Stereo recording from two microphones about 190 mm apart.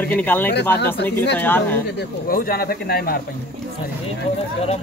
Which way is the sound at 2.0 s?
50° left (ahead or behind).